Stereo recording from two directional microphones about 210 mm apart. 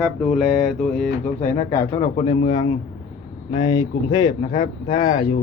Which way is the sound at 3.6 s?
20° left (ahead or behind).